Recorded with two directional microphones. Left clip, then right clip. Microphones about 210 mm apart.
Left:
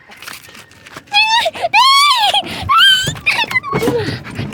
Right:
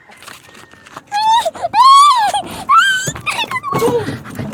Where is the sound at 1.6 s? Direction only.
20° left (ahead or behind).